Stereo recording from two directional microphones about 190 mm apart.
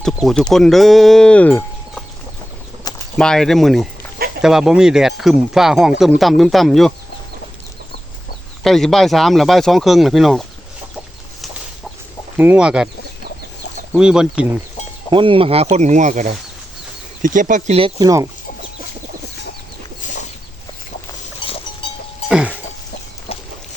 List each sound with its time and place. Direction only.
0.0 s speech: centre (ahead or behind)
3.2 s speech: 5° left (ahead or behind)
8.6 s speech: centre (ahead or behind)
12.4 s speech: 5° right (ahead or behind)
13.9 s speech: 5° right (ahead or behind)
15.1 s speech: 25° right (ahead or behind)
21.4 s a sound: 30° left (ahead or behind)
22.3 s cough: 5° right (ahead or behind)
23.3 s a sound: 30° left (ahead or behind)